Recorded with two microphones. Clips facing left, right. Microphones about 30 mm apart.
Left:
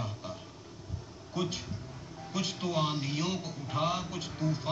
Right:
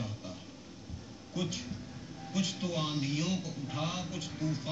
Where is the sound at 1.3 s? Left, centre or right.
Left.